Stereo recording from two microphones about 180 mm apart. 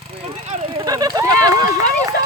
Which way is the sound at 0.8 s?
20° right (ahead or behind).